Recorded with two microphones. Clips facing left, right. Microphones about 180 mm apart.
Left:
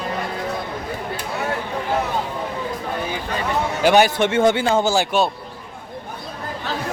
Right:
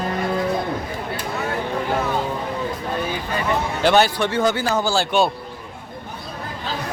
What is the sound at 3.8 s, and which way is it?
Speech, 15° left (ahead or behind).